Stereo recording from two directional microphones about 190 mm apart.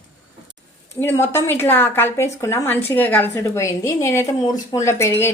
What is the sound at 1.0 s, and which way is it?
A woman's voice, 15° left (ahead or behind).